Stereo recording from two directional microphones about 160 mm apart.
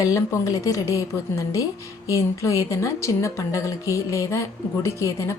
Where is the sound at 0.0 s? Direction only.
20° left (ahead or behind).